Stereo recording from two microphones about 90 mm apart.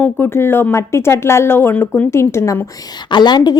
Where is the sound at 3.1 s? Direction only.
55° left (ahead or behind).